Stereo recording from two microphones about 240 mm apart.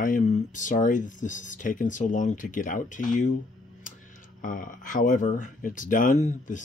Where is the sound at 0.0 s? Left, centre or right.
Left.